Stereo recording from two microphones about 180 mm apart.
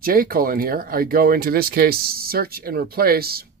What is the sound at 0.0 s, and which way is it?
Speech, 55° right (ahead or behind).